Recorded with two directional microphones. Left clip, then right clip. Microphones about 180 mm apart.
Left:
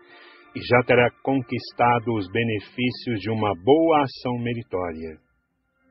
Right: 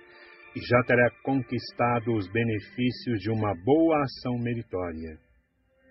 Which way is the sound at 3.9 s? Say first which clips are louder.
Left 6 dB; 20° left (ahead or behind).